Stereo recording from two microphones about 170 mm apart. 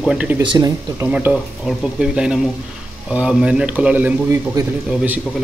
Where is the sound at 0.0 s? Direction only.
5° right (ahead or behind).